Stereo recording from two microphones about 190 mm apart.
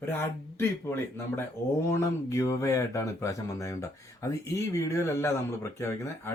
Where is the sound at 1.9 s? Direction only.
15° left (ahead or behind).